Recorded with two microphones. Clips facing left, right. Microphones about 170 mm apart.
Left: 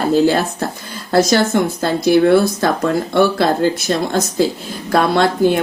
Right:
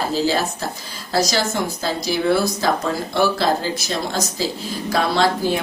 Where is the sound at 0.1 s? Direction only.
55° left (ahead or behind).